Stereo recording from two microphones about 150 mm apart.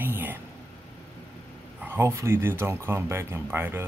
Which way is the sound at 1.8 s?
15° right (ahead or behind).